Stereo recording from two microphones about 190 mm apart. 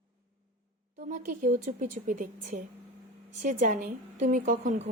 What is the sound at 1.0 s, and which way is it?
A woman's voice, 45° right (ahead or behind).